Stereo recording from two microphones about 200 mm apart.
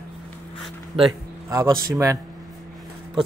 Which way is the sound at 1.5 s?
15° right (ahead or behind).